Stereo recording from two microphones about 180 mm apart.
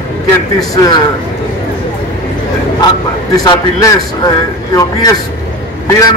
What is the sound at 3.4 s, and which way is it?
Speech, 20° left (ahead or behind).